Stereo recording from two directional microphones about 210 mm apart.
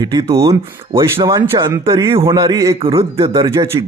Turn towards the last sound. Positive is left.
turn(degrees=-15)  # may be behind; listen again after turning